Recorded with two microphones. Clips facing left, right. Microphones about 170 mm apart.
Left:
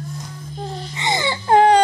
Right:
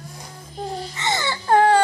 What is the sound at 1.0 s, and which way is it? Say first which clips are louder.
Baby cry: left 4 dB; 15° left (ahead or behind).